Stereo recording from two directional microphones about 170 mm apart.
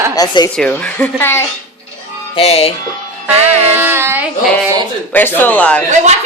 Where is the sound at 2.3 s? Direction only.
35° left (ahead or behind).